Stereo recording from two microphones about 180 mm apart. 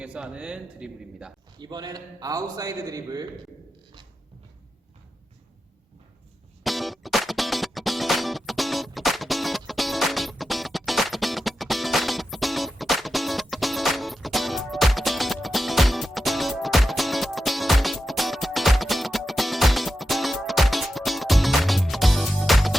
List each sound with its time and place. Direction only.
0.0 s speech: 5° right (ahead or behind)
1.5 s a man's voice: 25° right (ahead or behind)
6.7 s music: centre (ahead or behind)